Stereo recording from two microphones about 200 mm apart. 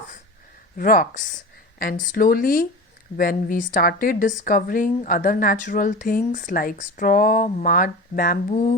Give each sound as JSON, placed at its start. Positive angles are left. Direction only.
{"t": 0.8, "sound": "a woman's voice", "side_deg": 45}